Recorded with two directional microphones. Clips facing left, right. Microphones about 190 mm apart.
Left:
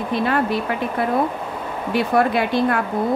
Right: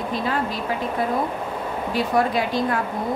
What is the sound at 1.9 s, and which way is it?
Speech, 60° left (ahead or behind).